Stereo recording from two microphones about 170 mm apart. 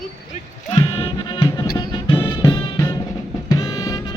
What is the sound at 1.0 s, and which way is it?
Music, 30° left (ahead or behind).